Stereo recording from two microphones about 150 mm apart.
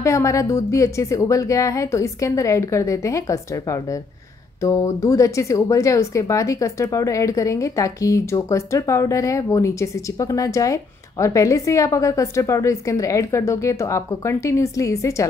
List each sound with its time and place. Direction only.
0.0 s speech: 20° left (ahead or behind)